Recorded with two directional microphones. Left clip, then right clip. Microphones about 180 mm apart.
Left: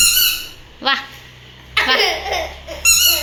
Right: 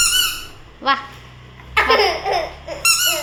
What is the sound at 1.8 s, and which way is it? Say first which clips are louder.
Laughter: even; 50° right (ahead or behind).